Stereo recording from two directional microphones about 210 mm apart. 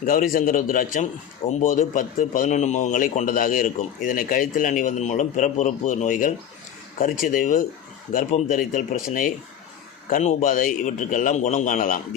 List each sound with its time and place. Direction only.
0.0 s speech: 40° left (ahead or behind)